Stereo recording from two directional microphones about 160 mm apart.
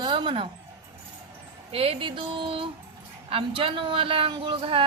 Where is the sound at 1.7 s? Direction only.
35° right (ahead or behind).